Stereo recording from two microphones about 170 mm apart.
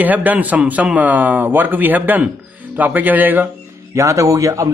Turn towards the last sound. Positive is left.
turn(degrees=-20)  # may be behind; listen again after turning